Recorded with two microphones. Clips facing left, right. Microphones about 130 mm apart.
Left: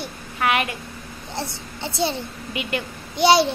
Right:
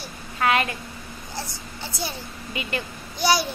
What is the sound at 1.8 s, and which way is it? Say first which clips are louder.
A child's voice: left 8 dB; 25° left (ahead or behind).